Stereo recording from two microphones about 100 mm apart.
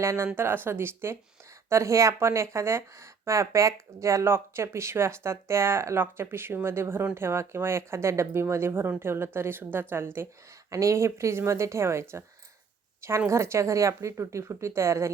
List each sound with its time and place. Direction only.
0.0 s a woman's voice: 30° right (ahead or behind)